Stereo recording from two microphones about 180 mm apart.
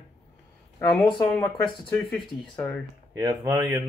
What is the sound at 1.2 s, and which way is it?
Speech, 5° left (ahead or behind).